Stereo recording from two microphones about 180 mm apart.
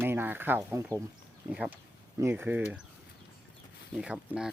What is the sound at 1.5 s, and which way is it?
Speech, 5° right (ahead or behind).